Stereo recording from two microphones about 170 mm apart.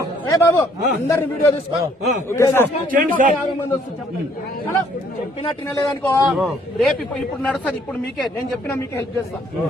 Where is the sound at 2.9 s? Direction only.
50° right (ahead or behind).